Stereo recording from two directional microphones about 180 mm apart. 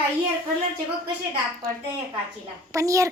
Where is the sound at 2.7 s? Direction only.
20° right (ahead or behind).